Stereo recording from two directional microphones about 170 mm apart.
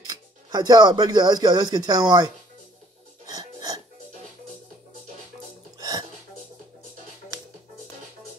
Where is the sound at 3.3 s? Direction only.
20° right (ahead or behind).